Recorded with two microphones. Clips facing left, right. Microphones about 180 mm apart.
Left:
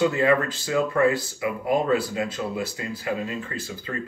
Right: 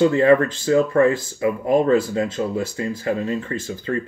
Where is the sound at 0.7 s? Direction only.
30° right (ahead or behind).